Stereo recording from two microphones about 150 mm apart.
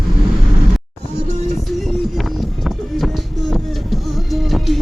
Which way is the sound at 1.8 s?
Centre (ahead or behind).